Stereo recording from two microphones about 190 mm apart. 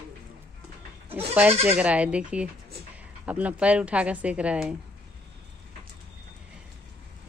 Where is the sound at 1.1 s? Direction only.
10° right (ahead or behind).